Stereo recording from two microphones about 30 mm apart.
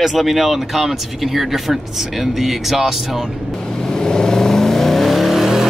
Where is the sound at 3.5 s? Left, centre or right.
Left.